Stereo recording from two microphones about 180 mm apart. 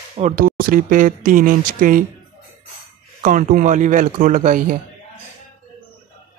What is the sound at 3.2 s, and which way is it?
Speech, 45° right (ahead or behind).